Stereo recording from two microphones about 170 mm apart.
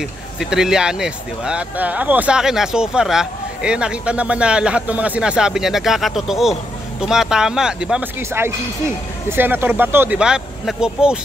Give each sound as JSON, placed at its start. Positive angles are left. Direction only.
{"t": 0.4, "sound": "speech", "side_deg": -5}
{"t": 8.2, "sound": "speech", "side_deg": -15}